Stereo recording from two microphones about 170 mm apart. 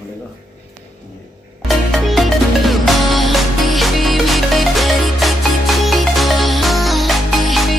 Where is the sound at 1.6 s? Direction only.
Centre (ahead or behind).